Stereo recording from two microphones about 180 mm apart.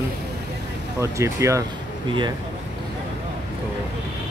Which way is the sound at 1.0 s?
15° right (ahead or behind).